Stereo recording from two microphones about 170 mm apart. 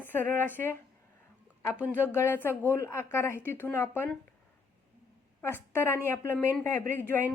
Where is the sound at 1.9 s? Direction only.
15° left (ahead or behind).